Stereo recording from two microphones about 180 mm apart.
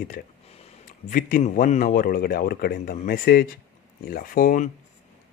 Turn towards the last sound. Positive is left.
turn(degrees=45)  # may be behind; listen again after turning